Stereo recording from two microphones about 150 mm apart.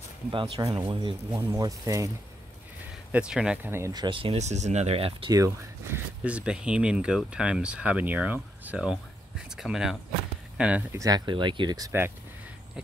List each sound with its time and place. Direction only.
0.3 s speech: 30° right (ahead or behind)
3.1 s speech: 5° right (ahead or behind)
3.7 s speech: 25° right (ahead or behind); by 5.3 s 40° right (ahead or behind)
5.3 s speech: 20° right (ahead or behind)
6.2 s speech: 5° right (ahead or behind)
11.0 s speech: 25° right (ahead or behind)